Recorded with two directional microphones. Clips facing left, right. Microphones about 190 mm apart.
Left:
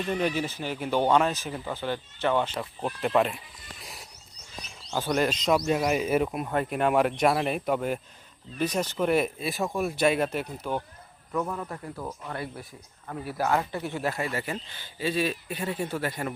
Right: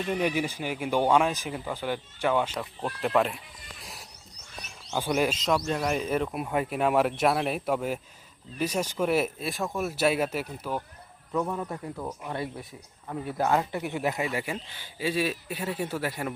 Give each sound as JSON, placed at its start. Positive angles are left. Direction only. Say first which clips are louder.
{"t": 0.1, "sound": "speech", "louder": "right 1 dB", "side_deg": -10}
{"t": 2.6, "sound": "speech", "louder": "left 1 dB", "side_deg": 0}
{"t": 5.5, "sound": "speech", "louder": "left 3 dB", "side_deg": 15}
{"t": 6.3, "sound": "speech", "louder": "even", "side_deg": -5}